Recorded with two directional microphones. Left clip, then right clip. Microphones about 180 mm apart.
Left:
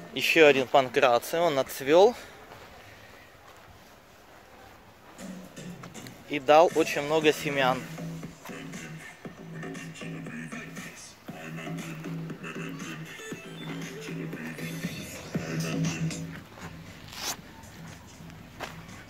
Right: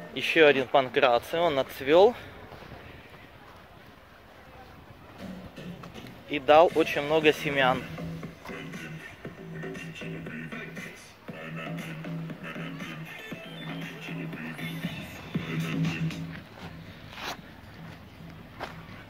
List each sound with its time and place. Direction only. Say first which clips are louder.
0.1 s speech: left 1 dB; 30° left (ahead or behind)
6.2 s speech: even; 15° left (ahead or behind)
8.5 s music: right 2 dB; 15° right (ahead or behind)
9.6 s music: right 1 dB; 25° right (ahead or behind)
11.5 s music: right 1 dB; 30° right (ahead or behind); by 16.2 s 5° right (ahead or behind)
17.1 s zipper: left 1 dB; 15° left (ahead or behind)